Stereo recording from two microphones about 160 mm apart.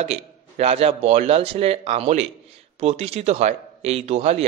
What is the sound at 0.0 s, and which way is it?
A man's voice, 40° right (ahead or behind).